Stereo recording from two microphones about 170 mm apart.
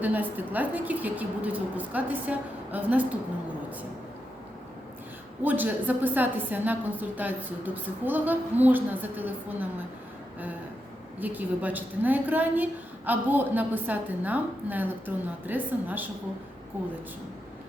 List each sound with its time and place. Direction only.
0.0 s a woman's voice: 10° right (ahead or behind)
5.4 s a woman's voice: 10° right (ahead or behind)
11.2 s a woman's voice: 10° right (ahead or behind)